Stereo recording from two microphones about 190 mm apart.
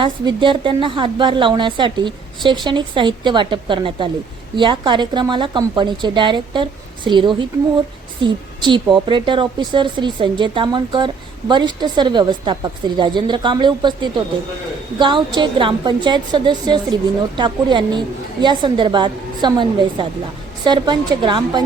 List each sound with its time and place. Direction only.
0.0 s a woman's voice: 25° right (ahead or behind)